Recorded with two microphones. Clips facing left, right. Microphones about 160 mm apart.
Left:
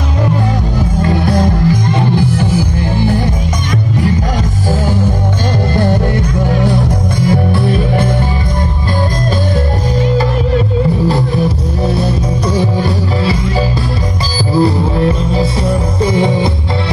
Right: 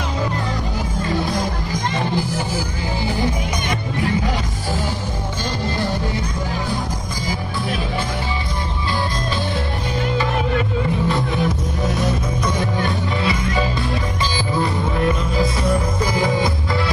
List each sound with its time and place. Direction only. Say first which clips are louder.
11.8 s music: left 6 dB; 30° left (ahead or behind)
14.5 s music: left 11 dB; 35° left (ahead or behind)